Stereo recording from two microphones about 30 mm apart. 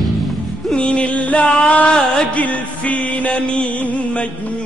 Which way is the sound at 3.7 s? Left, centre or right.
Left.